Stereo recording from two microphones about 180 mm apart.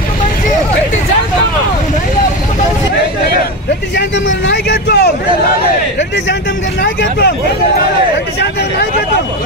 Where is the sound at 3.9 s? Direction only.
70° left (ahead or behind).